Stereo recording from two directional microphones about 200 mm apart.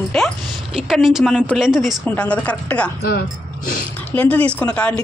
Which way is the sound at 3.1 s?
50° left (ahead or behind).